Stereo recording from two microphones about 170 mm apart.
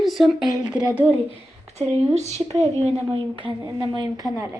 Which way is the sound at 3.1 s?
30° right (ahead or behind).